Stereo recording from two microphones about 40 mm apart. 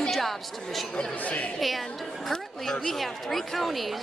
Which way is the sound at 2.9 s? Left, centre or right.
Centre.